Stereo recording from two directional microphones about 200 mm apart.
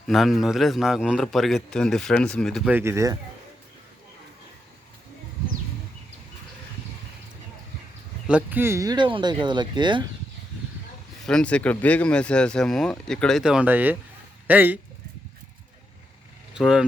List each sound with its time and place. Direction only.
0.1 s a man's voice: centre (ahead or behind)
8.3 s speech: 10° right (ahead or behind)
11.3 s a man's voice: 5° left (ahead or behind)
16.6 s a man's voice: 5° right (ahead or behind)